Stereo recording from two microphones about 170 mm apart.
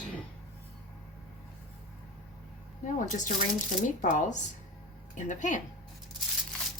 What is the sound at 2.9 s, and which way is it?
Speech, 50° left (ahead or behind).